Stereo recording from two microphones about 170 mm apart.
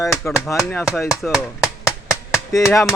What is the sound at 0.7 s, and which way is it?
Speech, 15° left (ahead or behind).